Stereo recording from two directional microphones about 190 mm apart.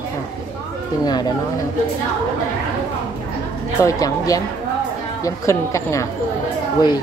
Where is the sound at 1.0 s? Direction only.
20° left (ahead or behind).